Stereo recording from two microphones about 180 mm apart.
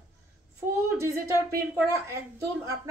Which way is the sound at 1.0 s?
15° right (ahead or behind).